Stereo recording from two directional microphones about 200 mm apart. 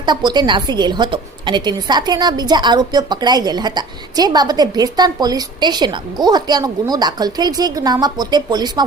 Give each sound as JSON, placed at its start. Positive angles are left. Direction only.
{"t": 0.0, "sound": "a woman's voice", "side_deg": -20}